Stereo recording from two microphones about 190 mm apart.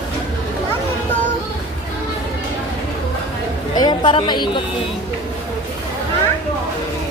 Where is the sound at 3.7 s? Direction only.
20° left (ahead or behind).